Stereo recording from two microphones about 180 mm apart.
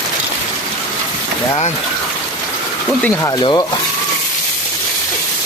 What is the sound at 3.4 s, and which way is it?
Speech, 25° left (ahead or behind).